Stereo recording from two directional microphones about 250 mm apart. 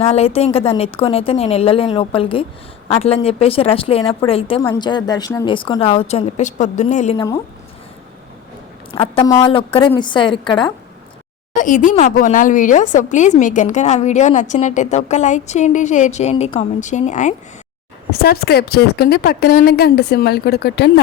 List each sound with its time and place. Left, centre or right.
0.0 s speech: left
8.9 s speech: left
11.5 s a woman's voice: left